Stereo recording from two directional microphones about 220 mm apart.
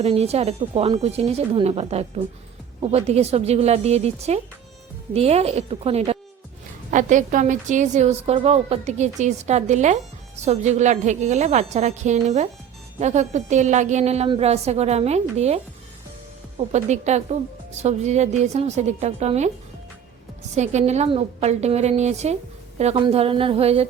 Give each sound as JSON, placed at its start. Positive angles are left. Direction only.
{"t": 0.0, "sound": "a woman's voice", "side_deg": -25}
{"t": 20.6, "sound": "a woman's voice", "side_deg": -30}